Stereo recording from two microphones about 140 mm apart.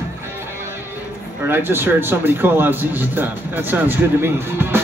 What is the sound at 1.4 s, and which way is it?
Speech, 15° right (ahead or behind).